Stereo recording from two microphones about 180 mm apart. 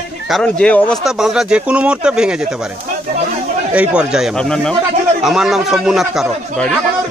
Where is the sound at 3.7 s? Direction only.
5° right (ahead or behind).